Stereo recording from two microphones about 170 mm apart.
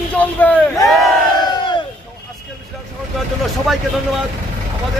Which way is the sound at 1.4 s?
25° left (ahead or behind).